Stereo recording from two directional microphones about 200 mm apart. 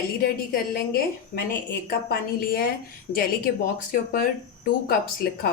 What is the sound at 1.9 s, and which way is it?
Speech, 50° left (ahead or behind).